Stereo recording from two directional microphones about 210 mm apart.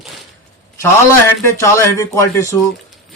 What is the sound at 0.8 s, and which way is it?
Speech, 15° left (ahead or behind).